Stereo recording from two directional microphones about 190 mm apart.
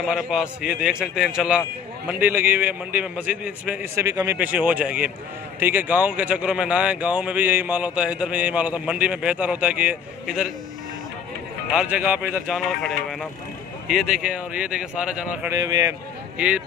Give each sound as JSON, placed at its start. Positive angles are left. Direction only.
{"t": 0.0, "sound": "speech", "side_deg": -5}
{"t": 11.7, "sound": "speech", "side_deg": -5}
{"t": 15.5, "sound": "speech", "side_deg": -20}
{"t": 16.3, "sound": "speech", "side_deg": -5}